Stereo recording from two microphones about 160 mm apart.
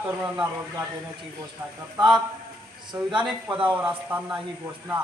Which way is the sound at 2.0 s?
25° right (ahead or behind).